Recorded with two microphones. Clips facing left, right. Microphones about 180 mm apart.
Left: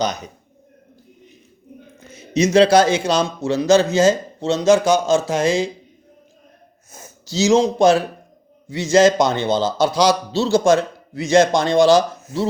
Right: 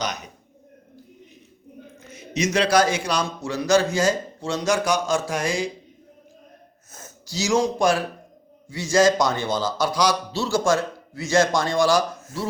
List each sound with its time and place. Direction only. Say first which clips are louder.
0.0 s a man's voice: left 7 dB; 30° left (ahead or behind)
2.0 s a man's voice: left 7 dB; 30° left (ahead or behind)
7.3 s a man's voice: left 6 dB; 25° left (ahead or behind)